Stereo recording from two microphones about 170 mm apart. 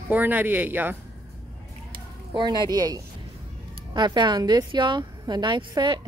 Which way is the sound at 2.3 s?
25° right (ahead or behind).